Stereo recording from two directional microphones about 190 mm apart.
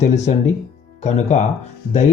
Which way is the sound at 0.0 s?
35° left (ahead or behind).